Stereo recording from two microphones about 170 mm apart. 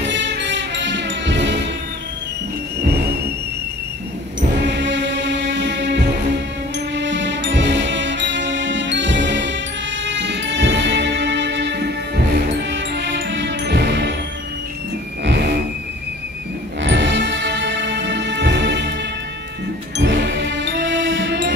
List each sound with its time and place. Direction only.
0.0 s music: 90° right
4.4 s music: 90° right
15.2 s music: 80° right
16.8 s music: 90° right
20.0 s music: 90° right